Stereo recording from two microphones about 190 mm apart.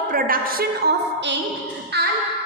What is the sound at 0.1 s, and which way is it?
A woman's voice, 50° right (ahead or behind).